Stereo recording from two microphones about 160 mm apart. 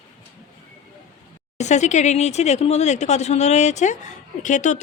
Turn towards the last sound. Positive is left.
turn(degrees=50)  # may be behind; listen again after turning